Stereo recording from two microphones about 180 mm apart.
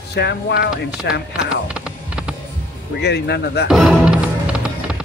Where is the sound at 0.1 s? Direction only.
70° left (ahead or behind).